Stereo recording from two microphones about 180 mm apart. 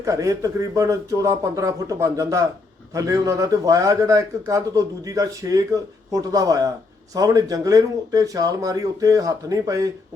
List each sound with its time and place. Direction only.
0.0 s a man's voice: 15° right (ahead or behind)